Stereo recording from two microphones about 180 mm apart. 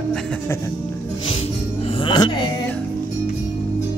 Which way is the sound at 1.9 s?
30° left (ahead or behind).